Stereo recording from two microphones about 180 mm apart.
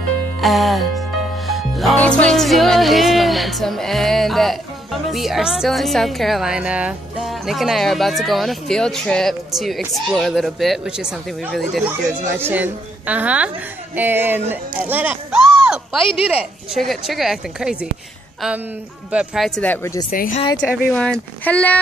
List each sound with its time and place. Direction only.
0.4 s a woman's voice: centre (ahead or behind)
1.5 s music: centre (ahead or behind)
5.1 s a woman's voice: centre (ahead or behind)
19.1 s speech: centre (ahead or behind); by 20.1 s 15° left (ahead or behind)
20.1 s speech: 50° left (ahead or behind)
20.9 s a woman's voice: 5° left (ahead or behind)